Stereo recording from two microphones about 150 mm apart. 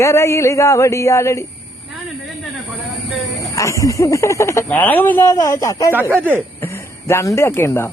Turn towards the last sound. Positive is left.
turn(degrees=15)  # may be behind; listen again after turning